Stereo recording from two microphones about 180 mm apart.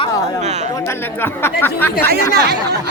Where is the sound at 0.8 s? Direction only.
15° left (ahead or behind).